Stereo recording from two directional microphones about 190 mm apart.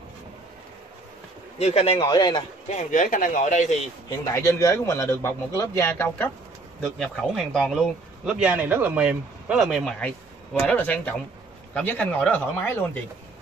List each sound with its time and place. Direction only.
1.6 s speech: 35° left (ahead or behind)
2.0 s speech: 20° left (ahead or behind)
2.7 s speech: 40° left (ahead or behind)
4.2 s a man's voice: 15° left (ahead or behind)